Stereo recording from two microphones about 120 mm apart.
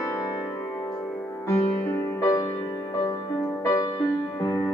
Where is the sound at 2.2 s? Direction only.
30° left (ahead or behind).